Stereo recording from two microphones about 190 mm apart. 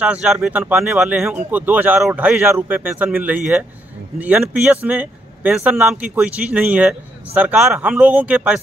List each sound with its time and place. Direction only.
0.0 s speech: 5° right (ahead or behind)